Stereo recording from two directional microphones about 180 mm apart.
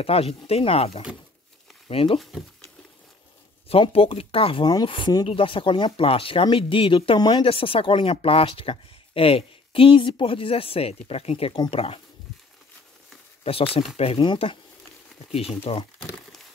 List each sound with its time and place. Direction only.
0.0 s speech: 35° left (ahead or behind)
3.6 s speech: 30° left (ahead or behind)
13.4 s speech: 35° left (ahead or behind)